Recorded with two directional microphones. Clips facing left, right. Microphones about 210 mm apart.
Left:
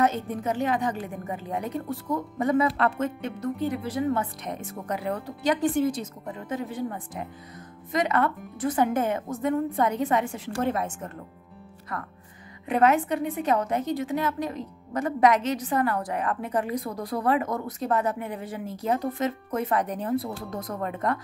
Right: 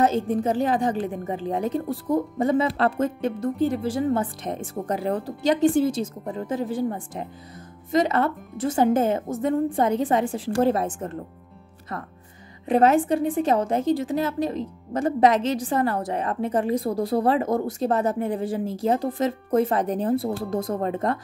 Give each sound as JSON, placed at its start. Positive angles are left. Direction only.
{"t": 0.0, "sound": "a woman's voice", "side_deg": -30}